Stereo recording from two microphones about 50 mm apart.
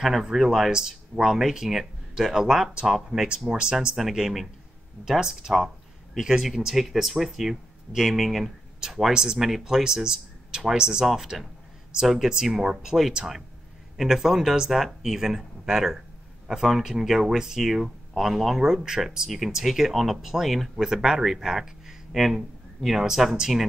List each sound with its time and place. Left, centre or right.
0.0 s speech: centre
3.4 s speech: centre
3.9 s speech: centre